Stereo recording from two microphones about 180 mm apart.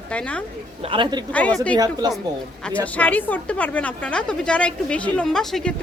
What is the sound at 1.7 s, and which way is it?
Speech, 20° right (ahead or behind).